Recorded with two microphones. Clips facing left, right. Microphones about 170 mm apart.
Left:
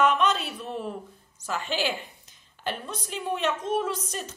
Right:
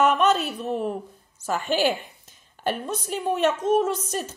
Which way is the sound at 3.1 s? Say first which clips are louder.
Right 5 dB; 50° right (ahead or behind).